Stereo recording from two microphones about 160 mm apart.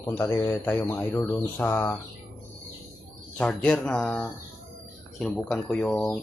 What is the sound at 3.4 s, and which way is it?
Speech, 5° left (ahead or behind).